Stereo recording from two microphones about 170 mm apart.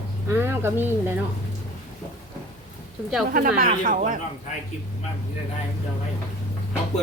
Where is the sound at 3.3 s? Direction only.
55° right (ahead or behind).